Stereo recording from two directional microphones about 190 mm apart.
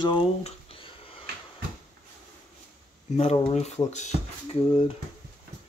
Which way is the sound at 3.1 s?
30° left (ahead or behind).